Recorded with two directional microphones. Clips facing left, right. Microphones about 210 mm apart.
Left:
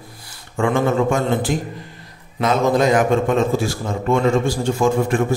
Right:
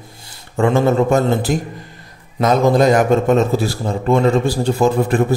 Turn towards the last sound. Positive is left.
turn(degrees=-35)  # may be behind; listen again after turning